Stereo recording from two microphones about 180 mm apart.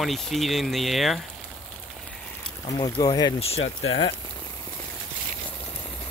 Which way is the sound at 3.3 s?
35° left (ahead or behind).